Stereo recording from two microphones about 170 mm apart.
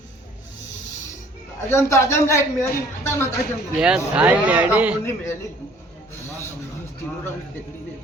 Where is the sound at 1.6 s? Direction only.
15° left (ahead or behind).